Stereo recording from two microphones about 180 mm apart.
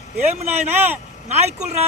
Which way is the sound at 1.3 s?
40° right (ahead or behind).